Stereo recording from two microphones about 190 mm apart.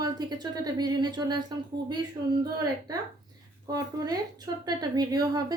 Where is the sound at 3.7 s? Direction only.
20° right (ahead or behind).